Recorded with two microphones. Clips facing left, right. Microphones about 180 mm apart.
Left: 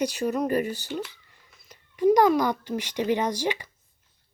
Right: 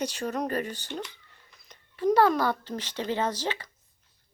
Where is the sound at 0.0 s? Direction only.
10° left (ahead or behind).